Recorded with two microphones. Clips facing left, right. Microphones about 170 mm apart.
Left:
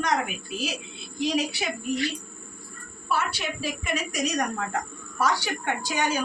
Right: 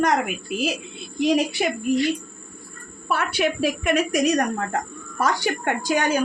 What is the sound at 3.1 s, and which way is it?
A woman's voice, 60° right (ahead or behind).